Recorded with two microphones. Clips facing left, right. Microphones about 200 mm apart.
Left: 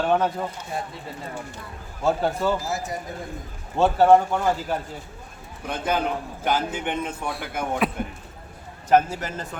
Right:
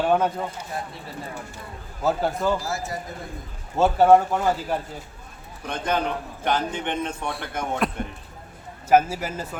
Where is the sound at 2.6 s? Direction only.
15° left (ahead or behind).